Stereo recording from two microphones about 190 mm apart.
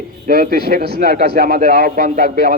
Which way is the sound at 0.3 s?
55° right (ahead or behind).